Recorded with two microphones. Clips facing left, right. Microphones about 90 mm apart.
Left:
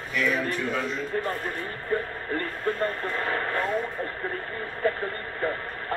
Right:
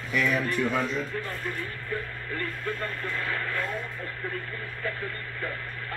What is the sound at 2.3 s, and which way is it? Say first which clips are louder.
Speech: left 4 dB; 35° left (ahead or behind).